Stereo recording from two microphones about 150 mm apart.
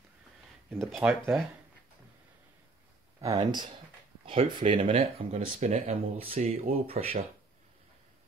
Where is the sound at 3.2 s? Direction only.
25° right (ahead or behind).